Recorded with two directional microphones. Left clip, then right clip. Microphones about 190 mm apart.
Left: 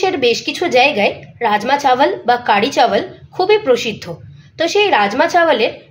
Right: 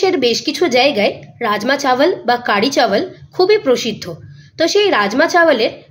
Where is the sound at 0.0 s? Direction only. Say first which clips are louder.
Even; 60° right (ahead or behind).